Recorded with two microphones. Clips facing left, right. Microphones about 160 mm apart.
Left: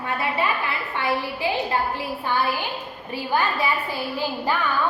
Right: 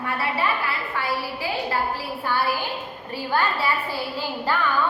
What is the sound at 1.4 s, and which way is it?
A woman's voice, 20° left (ahead or behind).